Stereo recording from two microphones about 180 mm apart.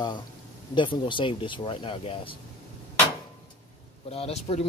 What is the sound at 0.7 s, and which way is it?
Speech, 25° left (ahead or behind).